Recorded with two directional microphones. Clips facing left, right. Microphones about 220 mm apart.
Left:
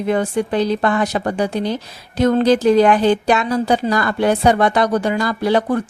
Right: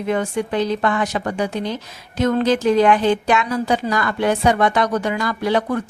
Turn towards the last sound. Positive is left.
turn(degrees=35)  # may be behind; listen again after turning